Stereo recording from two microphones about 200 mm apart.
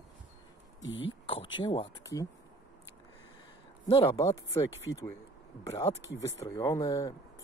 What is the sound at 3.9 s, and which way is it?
Speech, 20° left (ahead or behind).